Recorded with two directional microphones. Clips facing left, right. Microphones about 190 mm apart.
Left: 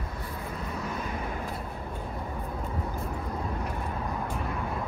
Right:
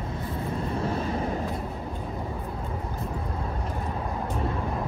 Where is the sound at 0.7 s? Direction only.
30° right (ahead or behind).